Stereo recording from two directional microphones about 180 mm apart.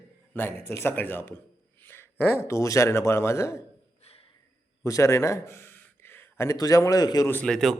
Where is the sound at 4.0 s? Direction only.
35° left (ahead or behind).